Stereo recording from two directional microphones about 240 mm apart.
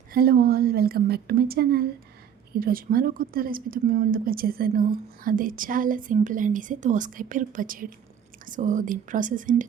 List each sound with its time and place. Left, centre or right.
0.1 s a woman's voice: right